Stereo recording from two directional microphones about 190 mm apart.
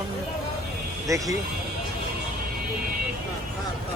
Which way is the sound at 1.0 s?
15° right (ahead or behind).